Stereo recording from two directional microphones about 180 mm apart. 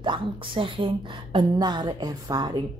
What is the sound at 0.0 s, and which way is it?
A woman's voice, 25° right (ahead or behind).